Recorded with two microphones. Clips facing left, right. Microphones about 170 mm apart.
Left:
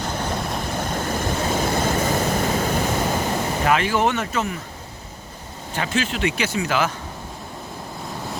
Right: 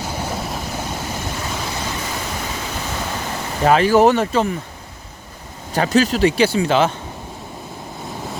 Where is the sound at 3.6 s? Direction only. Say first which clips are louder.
Right 8 dB; 35° right (ahead or behind).